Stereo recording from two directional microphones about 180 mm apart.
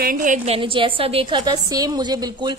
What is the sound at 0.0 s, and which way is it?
Speech, 50° right (ahead or behind).